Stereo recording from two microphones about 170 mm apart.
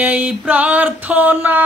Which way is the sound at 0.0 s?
10° right (ahead or behind).